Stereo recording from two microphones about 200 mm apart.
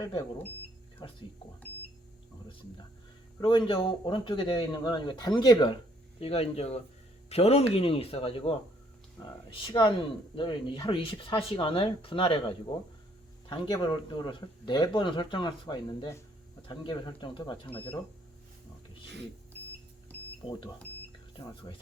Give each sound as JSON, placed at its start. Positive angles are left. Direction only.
{"t": 0.0, "sound": "speech", "side_deg": 20}
{"t": 3.4, "sound": "speech", "side_deg": 25}
{"t": 13.5, "sound": "speech", "side_deg": 25}
{"t": 20.4, "sound": "speech", "side_deg": 25}